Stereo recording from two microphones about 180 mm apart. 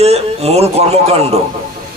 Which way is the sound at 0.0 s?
35° right (ahead or behind).